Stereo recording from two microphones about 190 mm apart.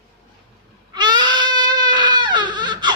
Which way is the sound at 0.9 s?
25° right (ahead or behind).